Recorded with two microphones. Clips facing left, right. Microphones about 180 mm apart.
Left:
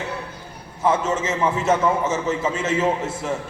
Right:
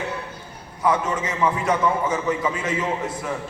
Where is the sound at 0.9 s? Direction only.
25° left (ahead or behind).